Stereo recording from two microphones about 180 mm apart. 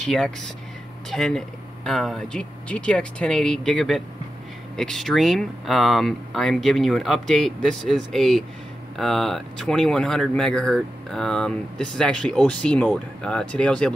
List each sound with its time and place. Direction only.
0.0 s speech: 5° left (ahead or behind)